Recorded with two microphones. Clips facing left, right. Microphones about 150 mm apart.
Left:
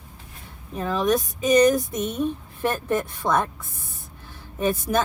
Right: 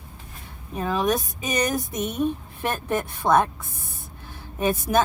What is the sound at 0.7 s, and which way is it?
Speech, 10° right (ahead or behind).